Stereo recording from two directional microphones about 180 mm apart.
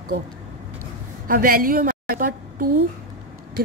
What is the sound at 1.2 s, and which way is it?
A woman's voice, 55° right (ahead or behind).